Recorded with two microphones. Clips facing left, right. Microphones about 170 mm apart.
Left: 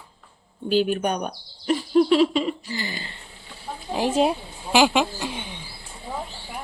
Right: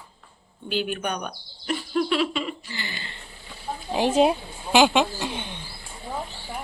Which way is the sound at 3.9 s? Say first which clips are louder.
Right 1 dB; centre (ahead or behind).